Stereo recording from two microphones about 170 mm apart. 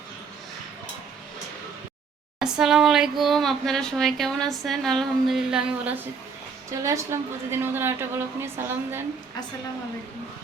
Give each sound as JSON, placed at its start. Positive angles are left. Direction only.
{"t": 2.4, "sound": "speech", "side_deg": -5}
{"t": 6.7, "sound": "a woman's voice", "side_deg": -15}